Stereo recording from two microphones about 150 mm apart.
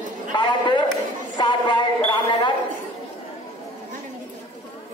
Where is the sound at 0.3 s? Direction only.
30° left (ahead or behind).